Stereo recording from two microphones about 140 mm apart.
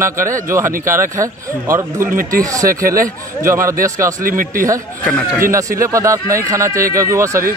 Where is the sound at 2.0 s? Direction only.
80° right.